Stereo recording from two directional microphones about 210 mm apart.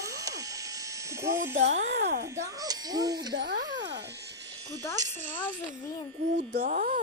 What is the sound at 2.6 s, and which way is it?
Speech, 20° right (ahead or behind).